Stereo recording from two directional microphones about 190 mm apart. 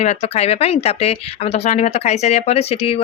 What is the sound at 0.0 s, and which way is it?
Speech, 35° left (ahead or behind).